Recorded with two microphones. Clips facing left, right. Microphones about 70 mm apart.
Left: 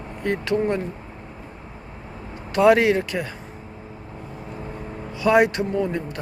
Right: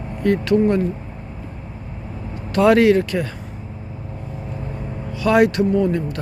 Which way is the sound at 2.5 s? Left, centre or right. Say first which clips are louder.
Right 3 dB; centre.